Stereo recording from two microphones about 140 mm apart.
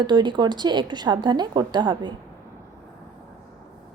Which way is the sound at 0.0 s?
35° right (ahead or behind).